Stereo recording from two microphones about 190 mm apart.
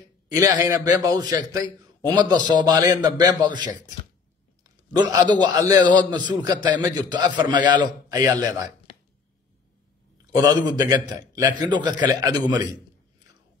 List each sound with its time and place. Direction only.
0.4 s a man's voice: 20° right (ahead or behind)
4.9 s a man's voice: 20° right (ahead or behind)
10.3 s a man's voice: 20° right (ahead or behind)